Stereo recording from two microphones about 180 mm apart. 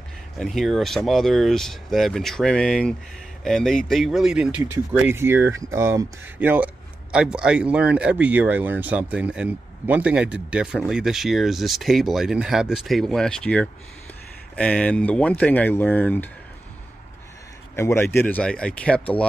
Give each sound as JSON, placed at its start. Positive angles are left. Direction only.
{"t": 0.4, "sound": "speech", "side_deg": 0}
{"t": 17.7, "sound": "speech", "side_deg": 15}